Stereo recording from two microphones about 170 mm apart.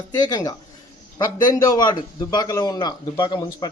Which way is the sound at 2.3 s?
20° left (ahead or behind).